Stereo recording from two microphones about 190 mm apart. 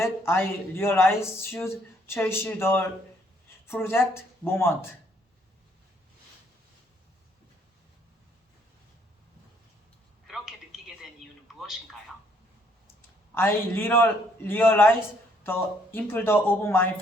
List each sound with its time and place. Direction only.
0.0 s speech: 15° left (ahead or behind)
10.2 s a sound: centre (ahead or behind)
11.6 s a man's voice: centre (ahead or behind)
13.3 s speech: 10° left (ahead or behind)